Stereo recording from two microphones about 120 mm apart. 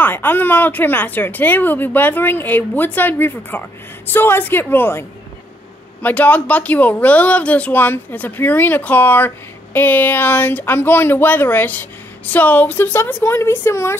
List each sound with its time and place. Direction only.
0.0 s a woman's voice: 15° left (ahead or behind)
6.0 s a woman's voice: 10° left (ahead or behind)